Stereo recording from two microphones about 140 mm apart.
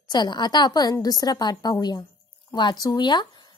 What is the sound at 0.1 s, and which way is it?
A woman's voice, 30° left (ahead or behind).